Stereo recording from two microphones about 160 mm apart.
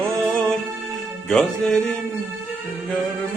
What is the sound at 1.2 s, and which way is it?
Music, 5° left (ahead or behind).